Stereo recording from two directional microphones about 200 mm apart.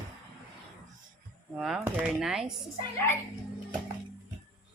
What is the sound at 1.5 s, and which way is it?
Speech, centre (ahead or behind).